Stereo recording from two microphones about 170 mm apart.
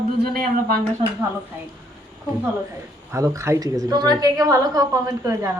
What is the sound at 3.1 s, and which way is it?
A woman's voice, 20° right (ahead or behind).